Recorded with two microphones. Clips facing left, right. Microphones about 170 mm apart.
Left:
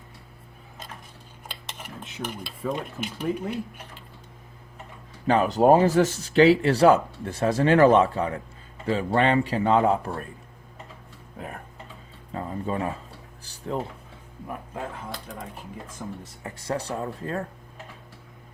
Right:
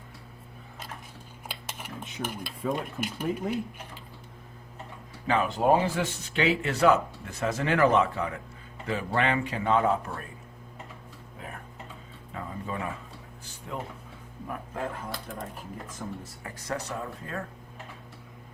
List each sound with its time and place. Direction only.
2.2 s speech: 5° right (ahead or behind)
5.3 s speech: 40° left (ahead or behind)
12.3 s speech: 35° left (ahead or behind)
13.4 s a sound: 35° left (ahead or behind)
15.1 s speech: centre (ahead or behind)
16.4 s speech: 30° left (ahead or behind)